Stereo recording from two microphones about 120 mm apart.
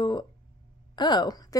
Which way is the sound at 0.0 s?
40° left (ahead or behind).